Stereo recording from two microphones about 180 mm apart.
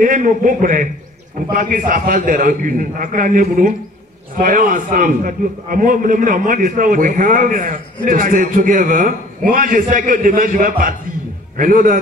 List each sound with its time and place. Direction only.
0.0 s a man's voice: 50° right (ahead or behind)